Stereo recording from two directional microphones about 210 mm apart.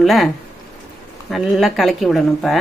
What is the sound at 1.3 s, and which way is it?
Speech, centre (ahead or behind).